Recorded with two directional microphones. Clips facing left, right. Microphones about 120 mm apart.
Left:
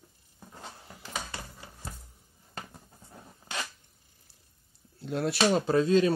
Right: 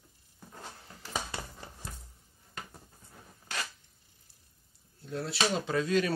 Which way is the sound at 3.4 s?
25° left (ahead or behind).